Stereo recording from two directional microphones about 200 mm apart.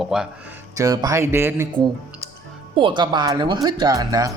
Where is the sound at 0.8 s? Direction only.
15° right (ahead or behind).